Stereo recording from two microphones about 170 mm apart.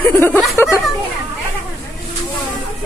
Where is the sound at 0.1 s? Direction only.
15° left (ahead or behind).